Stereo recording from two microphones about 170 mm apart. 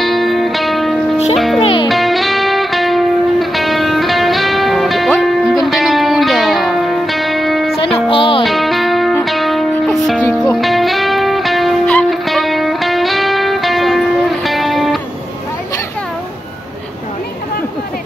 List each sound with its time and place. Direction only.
0.0 s music: centre (ahead or behind)
1.6 s music: 30° left (ahead or behind)
1.9 s music: centre (ahead or behind)
7.8 s music: 30° left (ahead or behind)
8.5 s music: centre (ahead or behind)